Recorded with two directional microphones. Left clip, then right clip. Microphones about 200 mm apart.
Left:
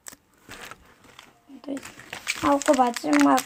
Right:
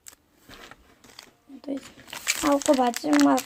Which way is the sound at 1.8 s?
45° left (ahead or behind).